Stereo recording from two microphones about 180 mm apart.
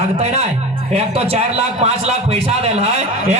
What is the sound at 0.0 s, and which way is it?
A man's voice, 35° right (ahead or behind).